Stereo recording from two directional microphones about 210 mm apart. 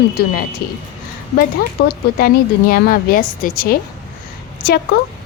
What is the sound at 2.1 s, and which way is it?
A woman's voice, 45° left (ahead or behind).